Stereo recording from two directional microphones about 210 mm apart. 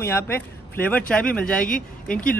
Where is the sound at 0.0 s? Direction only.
10° left (ahead or behind).